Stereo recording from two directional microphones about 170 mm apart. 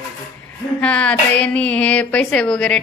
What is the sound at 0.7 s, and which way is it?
A woman's voice, 5° left (ahead or behind).